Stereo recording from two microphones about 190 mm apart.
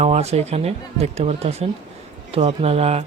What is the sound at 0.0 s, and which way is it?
Speech, 35° right (ahead or behind).